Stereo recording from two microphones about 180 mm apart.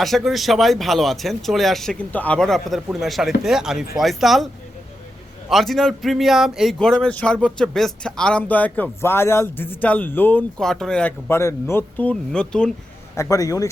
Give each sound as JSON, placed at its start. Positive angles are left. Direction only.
{"t": 0.0, "sound": "speech", "side_deg": 0}
{"t": 5.5, "sound": "speech", "side_deg": 0}
{"t": 13.1, "sound": "speech", "side_deg": 15}